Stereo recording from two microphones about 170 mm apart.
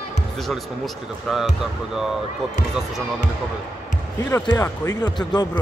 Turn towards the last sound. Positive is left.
turn(degrees=25)  # may be behind; listen again after turning